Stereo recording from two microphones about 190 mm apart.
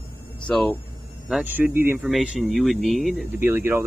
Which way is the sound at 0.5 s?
5° left (ahead or behind).